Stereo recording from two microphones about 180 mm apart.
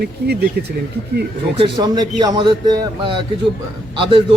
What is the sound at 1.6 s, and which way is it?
A man's voice, 25° right (ahead or behind).